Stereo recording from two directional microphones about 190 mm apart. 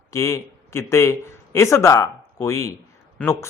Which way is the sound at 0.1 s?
15° left (ahead or behind).